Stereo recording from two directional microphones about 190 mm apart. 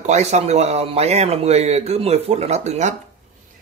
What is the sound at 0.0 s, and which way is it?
Speech, 35° right (ahead or behind).